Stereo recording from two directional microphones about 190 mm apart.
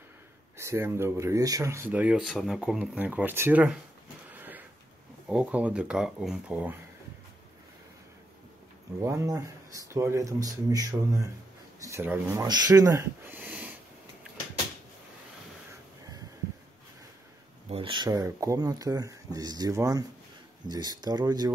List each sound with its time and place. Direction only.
0.6 s speech: 15° right (ahead or behind)
4.3 s a sound: 10° right (ahead or behind)
5.3 s speech: 5° right (ahead or behind)
9.0 s speech: 15° right (ahead or behind)
17.6 s speech: 30° right (ahead or behind)